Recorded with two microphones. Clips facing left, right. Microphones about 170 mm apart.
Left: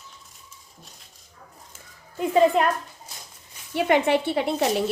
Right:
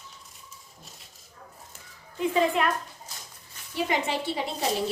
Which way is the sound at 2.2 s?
35° left (ahead or behind).